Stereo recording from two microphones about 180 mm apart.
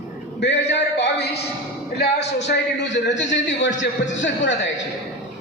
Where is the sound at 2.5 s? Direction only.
85° left.